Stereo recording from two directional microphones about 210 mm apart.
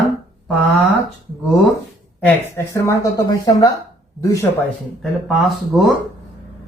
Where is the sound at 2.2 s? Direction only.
15° left (ahead or behind).